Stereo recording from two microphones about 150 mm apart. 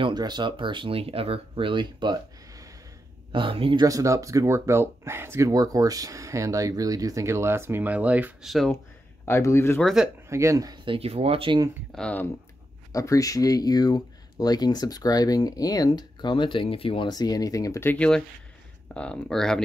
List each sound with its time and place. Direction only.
0.0 s speech: 30° right (ahead or behind)
3.8 s speech: 20° right (ahead or behind); by 8.7 s centre (ahead or behind)
8.7 s speech: 20° left (ahead or behind)
10.3 s speech: 20° right (ahead or behind)
10.9 s speech: 40° right (ahead or behind)
11.9 s speech: 10° left (ahead or behind)
12.9 s speech: 20° left (ahead or behind); by 19.6 s 5° left (ahead or behind)